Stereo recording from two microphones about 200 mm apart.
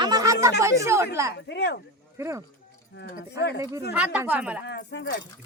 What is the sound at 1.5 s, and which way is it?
Speech, 60° left (ahead or behind).